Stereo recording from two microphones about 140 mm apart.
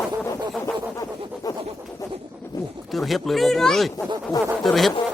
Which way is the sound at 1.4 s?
25° left (ahead or behind).